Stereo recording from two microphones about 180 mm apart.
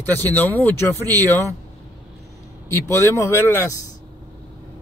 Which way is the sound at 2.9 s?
15° left (ahead or behind).